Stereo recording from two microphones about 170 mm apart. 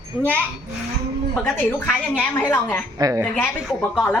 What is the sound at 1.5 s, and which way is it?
A woman's voice, 10° left (ahead or behind).